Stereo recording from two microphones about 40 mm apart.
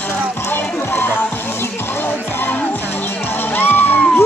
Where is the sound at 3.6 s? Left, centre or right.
Left.